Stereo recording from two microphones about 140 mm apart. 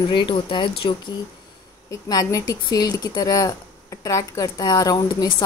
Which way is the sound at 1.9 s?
25° left (ahead or behind).